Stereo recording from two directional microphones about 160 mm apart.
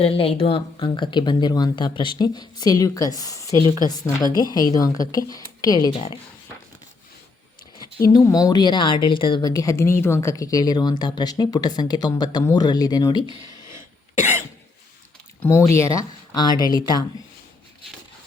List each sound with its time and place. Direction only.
0.0 s speech: 35° left (ahead or behind)
5.9 s speech: 40° left (ahead or behind)
8.0 s speech: 20° left (ahead or behind)
15.4 s speech: 15° left (ahead or behind)